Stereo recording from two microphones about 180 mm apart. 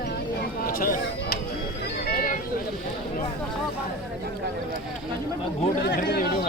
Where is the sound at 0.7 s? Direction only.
55° left (ahead or behind).